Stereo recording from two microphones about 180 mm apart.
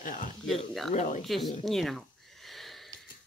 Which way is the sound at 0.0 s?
50° left (ahead or behind).